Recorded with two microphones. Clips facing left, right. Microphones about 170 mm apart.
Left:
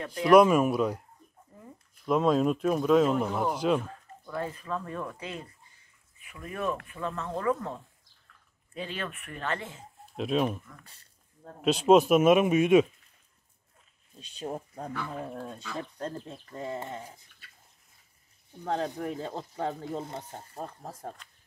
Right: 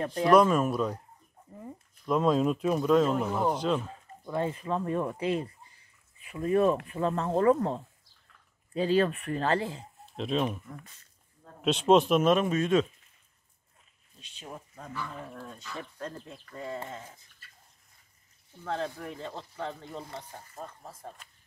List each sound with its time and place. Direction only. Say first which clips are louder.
0.0 s speech: right 3 dB; 35° right (ahead or behind)
0.3 s speech: left 3 dB; 10° left (ahead or behind)
2.0 s speech: left 1 dB; centre (ahead or behind)
4.2 s speech: right 4 dB; 25° right (ahead or behind)
10.1 s speech: left 2 dB; 5° left (ahead or behind)
11.6 s speech: left 2 dB; centre (ahead or behind)
14.2 s speech: left 8 dB; 40° left (ahead or behind)
15.8 s speech: left 3 dB; 30° left (ahead or behind)
18.9 s speech: left 5 dB; 40° left (ahead or behind)
19.9 s speech: left 5 dB; 20° left (ahead or behind)